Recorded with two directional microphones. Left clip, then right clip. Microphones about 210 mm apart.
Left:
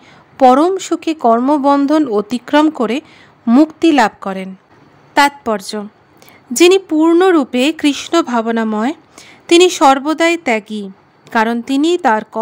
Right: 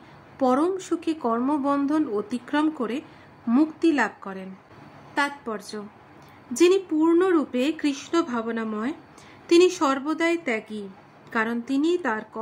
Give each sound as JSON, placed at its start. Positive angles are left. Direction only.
{"t": 0.4, "sound": "speech", "side_deg": 45}